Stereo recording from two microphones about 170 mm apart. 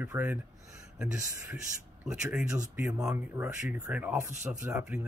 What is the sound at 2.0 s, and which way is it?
Speech, 5° right (ahead or behind).